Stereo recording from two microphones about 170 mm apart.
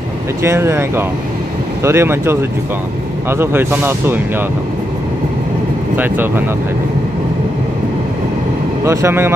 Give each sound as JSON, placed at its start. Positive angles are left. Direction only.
{"t": 0.4, "sound": "speech", "side_deg": -15}
{"t": 5.9, "sound": "speech", "side_deg": -10}
{"t": 8.8, "sound": "speech", "side_deg": -15}